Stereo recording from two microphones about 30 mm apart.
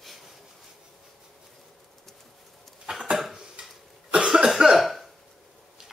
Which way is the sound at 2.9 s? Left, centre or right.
Right.